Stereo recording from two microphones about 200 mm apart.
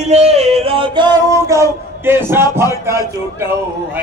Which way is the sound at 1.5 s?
15° right (ahead or behind).